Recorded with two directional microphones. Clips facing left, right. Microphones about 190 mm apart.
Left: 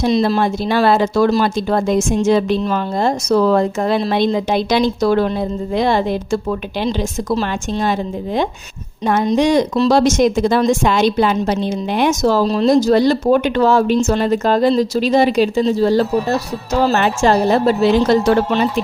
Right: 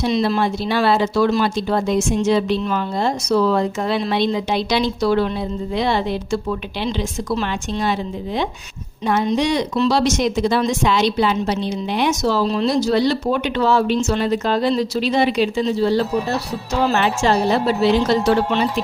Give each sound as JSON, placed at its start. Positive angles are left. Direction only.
{"t": 0.0, "sound": "speech", "side_deg": 40}